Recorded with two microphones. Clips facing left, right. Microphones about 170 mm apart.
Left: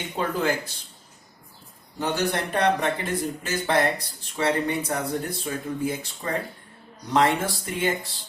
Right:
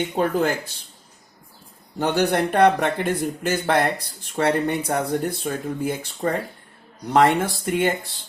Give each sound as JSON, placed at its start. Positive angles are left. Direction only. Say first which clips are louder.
{"t": 0.2, "sound": "speech", "louder": "right 4 dB", "side_deg": -50}
{"t": 2.0, "sound": "speech", "louder": "right 5 dB", "side_deg": -60}